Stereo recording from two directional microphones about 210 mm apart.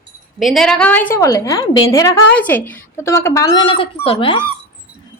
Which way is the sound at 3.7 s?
25° left (ahead or behind).